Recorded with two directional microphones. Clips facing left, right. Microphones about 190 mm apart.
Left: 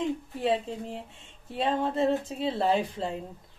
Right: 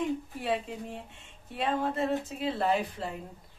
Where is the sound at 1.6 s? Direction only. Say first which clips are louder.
Left 3 dB; 30° left (ahead or behind).